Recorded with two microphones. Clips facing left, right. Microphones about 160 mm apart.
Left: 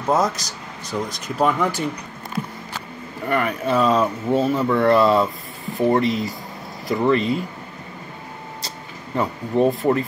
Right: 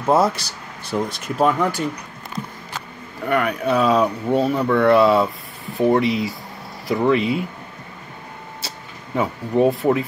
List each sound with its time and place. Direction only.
0.0 s speech: 5° right (ahead or behind)
0.4 s speech: 30° right (ahead or behind)
1.2 s speech: centre (ahead or behind)
3.3 s speech: centre (ahead or behind)
8.5 s a sound: 5° right (ahead or behind)